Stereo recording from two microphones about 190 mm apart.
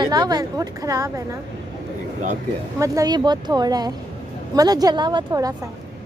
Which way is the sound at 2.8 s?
20° right (ahead or behind).